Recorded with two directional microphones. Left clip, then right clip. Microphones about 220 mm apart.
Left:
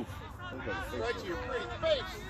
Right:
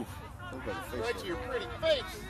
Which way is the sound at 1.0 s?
35° right (ahead or behind).